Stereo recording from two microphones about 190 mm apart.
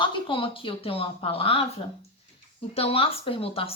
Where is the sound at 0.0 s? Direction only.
30° left (ahead or behind).